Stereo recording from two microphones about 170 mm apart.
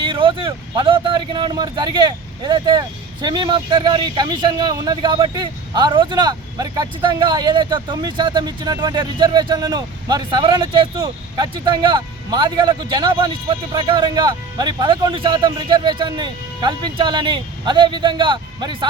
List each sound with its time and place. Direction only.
0.0 s speech: 30° right (ahead or behind)